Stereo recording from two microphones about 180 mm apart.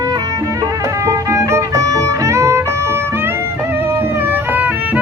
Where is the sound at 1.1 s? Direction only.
15° right (ahead or behind).